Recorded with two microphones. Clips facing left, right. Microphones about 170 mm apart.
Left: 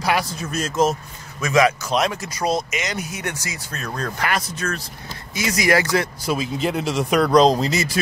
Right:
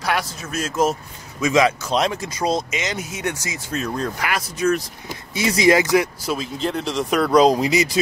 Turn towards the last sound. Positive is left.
turn(degrees=-15)  # may be behind; listen again after turning